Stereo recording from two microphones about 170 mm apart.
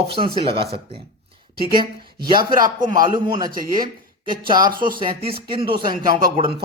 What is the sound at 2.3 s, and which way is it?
A man's voice, 25° right (ahead or behind).